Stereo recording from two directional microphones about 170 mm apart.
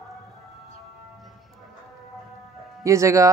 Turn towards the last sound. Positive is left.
turn(degrees=-20)  # may be behind; listen again after turning